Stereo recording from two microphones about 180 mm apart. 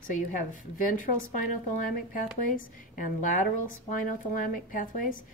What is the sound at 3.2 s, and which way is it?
A woman's voice, 45° left (ahead or behind).